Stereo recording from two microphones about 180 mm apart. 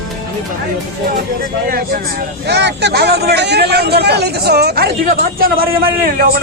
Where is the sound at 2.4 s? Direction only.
70° right (ahead or behind).